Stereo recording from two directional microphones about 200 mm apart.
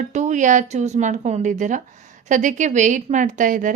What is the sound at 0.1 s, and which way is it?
A woman's voice, 35° right (ahead or behind).